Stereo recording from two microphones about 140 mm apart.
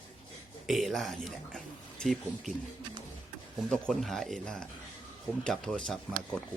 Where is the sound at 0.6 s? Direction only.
Centre (ahead or behind).